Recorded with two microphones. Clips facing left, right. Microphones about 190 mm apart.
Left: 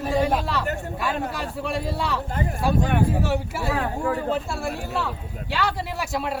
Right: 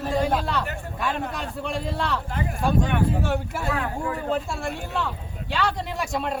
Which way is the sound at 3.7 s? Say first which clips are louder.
Left 4 dB; 35° left (ahead or behind).